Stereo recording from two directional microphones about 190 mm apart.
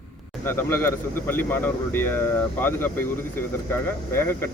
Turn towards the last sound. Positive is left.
turn(degrees=10)  # may be behind; listen again after turning